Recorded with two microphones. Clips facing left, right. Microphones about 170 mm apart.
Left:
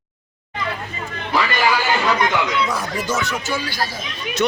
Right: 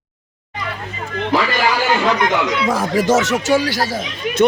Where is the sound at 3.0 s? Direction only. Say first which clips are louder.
Right 8 dB; 90° right.